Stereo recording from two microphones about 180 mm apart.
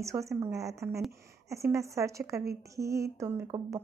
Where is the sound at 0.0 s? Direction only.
15° right (ahead or behind).